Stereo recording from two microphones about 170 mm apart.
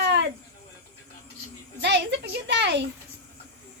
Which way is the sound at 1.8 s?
90° right.